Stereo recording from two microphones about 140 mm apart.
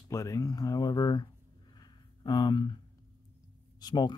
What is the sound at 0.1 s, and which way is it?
Speech, 25° left (ahead or behind).